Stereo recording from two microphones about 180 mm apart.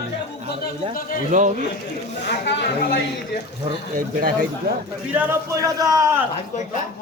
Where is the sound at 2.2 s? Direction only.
70° left (ahead or behind).